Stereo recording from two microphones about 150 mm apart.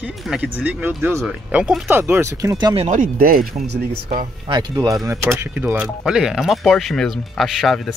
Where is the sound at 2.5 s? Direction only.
35° right (ahead or behind).